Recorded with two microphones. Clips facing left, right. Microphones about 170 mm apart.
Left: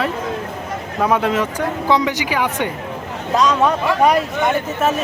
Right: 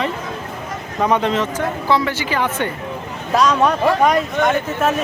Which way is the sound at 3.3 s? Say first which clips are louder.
Even; centre (ahead or behind).